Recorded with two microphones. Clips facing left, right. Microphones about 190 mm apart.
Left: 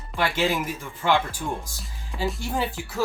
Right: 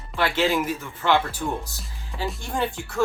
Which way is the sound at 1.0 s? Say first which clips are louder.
Right 1 dB; 10° left (ahead or behind).